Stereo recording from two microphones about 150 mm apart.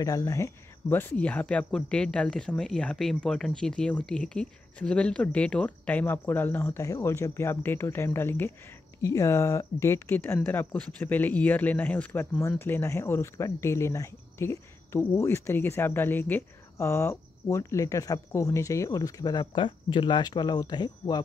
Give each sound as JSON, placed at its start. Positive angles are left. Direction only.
{"t": 0.0, "sound": "speech", "side_deg": 25}